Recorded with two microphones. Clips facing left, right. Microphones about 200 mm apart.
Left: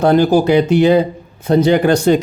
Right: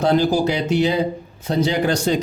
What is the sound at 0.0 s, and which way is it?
Speech, 55° left (ahead or behind).